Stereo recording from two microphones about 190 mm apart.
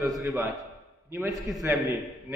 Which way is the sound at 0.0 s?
15° right (ahead or behind).